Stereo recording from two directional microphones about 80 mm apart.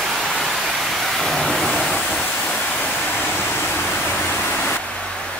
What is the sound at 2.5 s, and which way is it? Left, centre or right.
Waterfall, centre.